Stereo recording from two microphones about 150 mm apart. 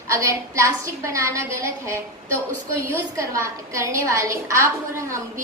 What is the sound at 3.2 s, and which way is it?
A woman's voice, 20° right (ahead or behind).